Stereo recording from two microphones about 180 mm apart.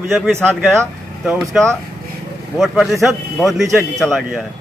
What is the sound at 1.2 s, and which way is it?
A man's voice, centre (ahead or behind).